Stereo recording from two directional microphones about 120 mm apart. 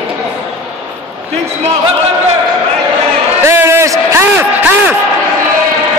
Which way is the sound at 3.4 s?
20° right (ahead or behind).